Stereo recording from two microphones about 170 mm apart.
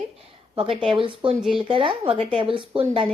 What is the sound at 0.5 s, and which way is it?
Speech, 30° right (ahead or behind).